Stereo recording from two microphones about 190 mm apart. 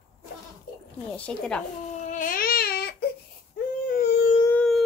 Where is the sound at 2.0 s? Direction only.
45° left (ahead or behind).